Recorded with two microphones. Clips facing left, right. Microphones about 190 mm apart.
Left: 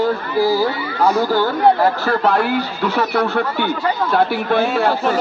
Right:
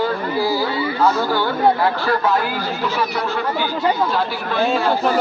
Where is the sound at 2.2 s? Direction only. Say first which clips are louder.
Left 3 dB; 60° left (ahead or behind).